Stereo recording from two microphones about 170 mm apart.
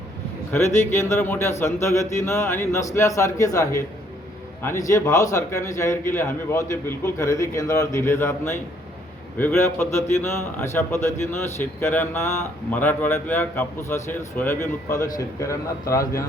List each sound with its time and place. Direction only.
0.5 s speech: 15° left (ahead or behind)